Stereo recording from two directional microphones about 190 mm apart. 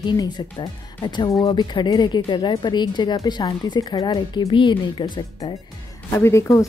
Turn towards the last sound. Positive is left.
turn(degrees=15)  # may be behind; listen again after turning